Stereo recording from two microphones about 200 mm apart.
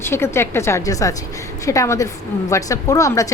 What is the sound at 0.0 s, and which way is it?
A woman's voice, 10° left (ahead or behind).